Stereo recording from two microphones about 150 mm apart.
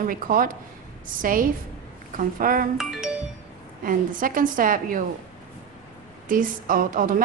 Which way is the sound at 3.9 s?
65° right (ahead or behind).